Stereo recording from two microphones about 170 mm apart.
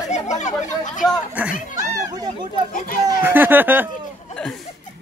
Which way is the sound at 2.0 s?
20° right (ahead or behind).